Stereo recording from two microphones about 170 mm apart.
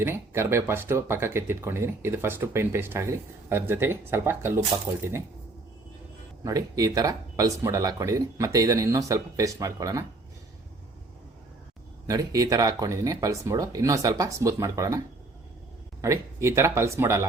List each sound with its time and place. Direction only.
0.0 s speech: 15° right (ahead or behind)
6.4 s speech: 20° right (ahead or behind)
12.0 s speech: 20° right (ahead or behind)